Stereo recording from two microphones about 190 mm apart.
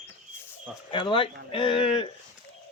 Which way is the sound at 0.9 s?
25° left (ahead or behind).